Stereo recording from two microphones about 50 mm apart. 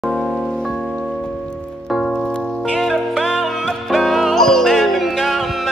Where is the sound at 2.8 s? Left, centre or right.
Centre.